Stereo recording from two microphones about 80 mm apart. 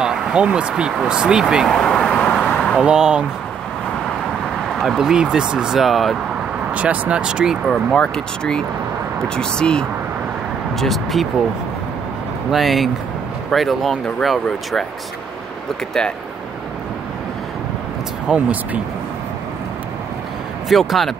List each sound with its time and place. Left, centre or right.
0.0 s speech: centre
1.7 s vehicle: centre
2.5 s a sound: centre
2.8 s speech: centre
4.7 s speech: centre
6.7 s speech: centre
7.6 s speech: centre
12.4 s speech: centre
18.3 s speech: centre
20.6 s speech: centre